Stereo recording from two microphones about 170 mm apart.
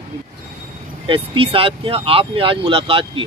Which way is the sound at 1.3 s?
30° right (ahead or behind).